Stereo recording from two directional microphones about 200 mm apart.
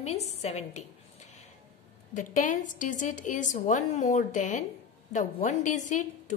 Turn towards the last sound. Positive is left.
turn(degrees=40)  # may be behind; listen again after turning